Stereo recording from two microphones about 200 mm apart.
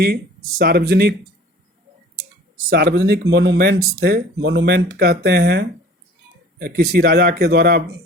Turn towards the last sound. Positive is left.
turn(degrees=-50)  # may be behind; listen again after turning